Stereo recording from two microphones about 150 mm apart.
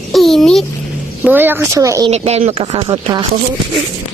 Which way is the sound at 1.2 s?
15° right (ahead or behind).